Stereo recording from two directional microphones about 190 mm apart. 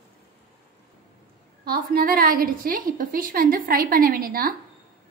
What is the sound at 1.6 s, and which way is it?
A woman's voice, 50° right (ahead or behind).